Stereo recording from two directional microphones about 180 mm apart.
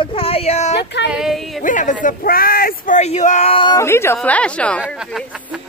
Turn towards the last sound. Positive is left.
turn(degrees=5)  # may be behind; listen again after turning